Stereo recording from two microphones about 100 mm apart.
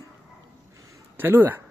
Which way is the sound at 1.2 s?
20° right (ahead or behind).